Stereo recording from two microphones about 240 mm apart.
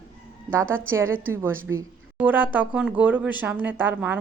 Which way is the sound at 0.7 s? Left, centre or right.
Centre.